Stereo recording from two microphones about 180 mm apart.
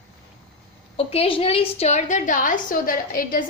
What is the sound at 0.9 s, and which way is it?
A woman's voice, 35° left (ahead or behind).